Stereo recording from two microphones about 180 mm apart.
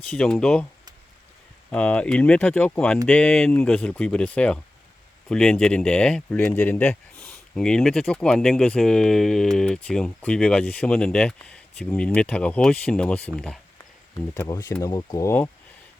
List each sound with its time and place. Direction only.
0.0 s speech: 5° left (ahead or behind)
1.7 s speech: 5° left (ahead or behind)
14.3 s speech: 15° left (ahead or behind)